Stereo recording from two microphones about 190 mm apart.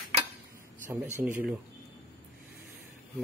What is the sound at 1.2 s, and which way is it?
Speech, 10° right (ahead or behind).